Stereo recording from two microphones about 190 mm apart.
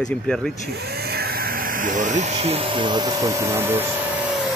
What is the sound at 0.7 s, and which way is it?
Speech, 55° right (ahead or behind).